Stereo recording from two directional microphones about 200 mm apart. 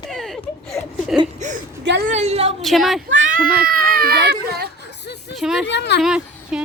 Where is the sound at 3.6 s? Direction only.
45° right (ahead or behind).